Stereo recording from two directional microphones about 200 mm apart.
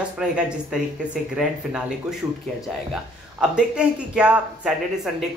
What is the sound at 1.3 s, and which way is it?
Speech, 5° right (ahead or behind).